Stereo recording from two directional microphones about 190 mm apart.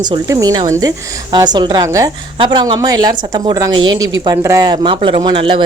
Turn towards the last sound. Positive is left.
turn(degrees=-25)  # may be behind; listen again after turning